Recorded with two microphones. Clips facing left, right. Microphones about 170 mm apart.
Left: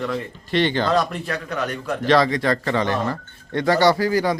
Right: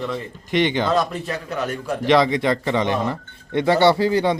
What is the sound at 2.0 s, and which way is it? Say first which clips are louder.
Speech: right 1 dB; 20° right (ahead or behind).